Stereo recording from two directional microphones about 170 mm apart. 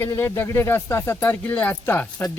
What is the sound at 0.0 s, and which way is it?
Speech, 15° left (ahead or behind).